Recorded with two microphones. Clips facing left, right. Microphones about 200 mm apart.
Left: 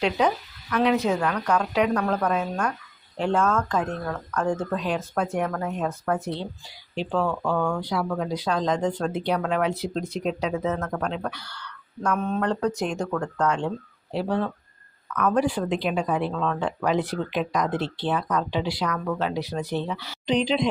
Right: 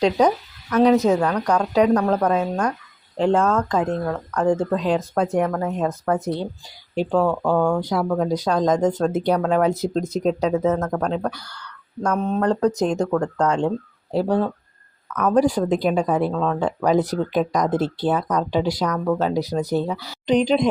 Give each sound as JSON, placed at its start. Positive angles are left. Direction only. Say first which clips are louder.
{"t": 0.0, "sound": "speech", "louder": "right 5 dB", "side_deg": -40}
{"t": 6.2, "sound": "speech", "louder": "right 5 dB", "side_deg": -45}